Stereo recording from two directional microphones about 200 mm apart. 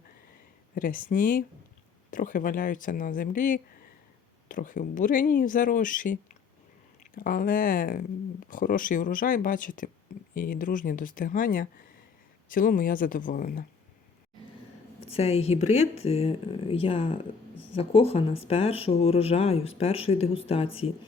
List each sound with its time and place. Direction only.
0.8 s speech: 45° left (ahead or behind)
7.2 s speech: 45° left (ahead or behind)
15.0 s speech: 30° left (ahead or behind)